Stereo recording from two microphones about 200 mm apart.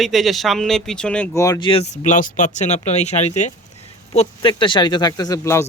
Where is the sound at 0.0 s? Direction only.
Centre (ahead or behind).